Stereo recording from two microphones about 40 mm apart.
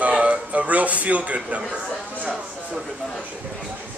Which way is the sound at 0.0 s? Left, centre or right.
Right.